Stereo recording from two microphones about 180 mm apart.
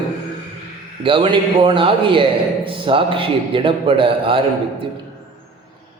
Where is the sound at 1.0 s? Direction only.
30° right (ahead or behind).